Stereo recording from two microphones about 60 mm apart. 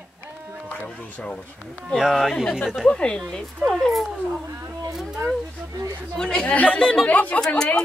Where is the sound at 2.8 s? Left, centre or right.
Centre.